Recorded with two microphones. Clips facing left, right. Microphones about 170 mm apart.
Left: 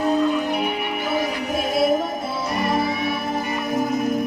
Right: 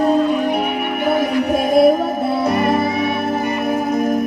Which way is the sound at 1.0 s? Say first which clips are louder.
Right 9 dB; 55° right (ahead or behind).